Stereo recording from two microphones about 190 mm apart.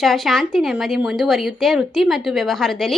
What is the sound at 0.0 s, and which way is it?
Speech, centre (ahead or behind).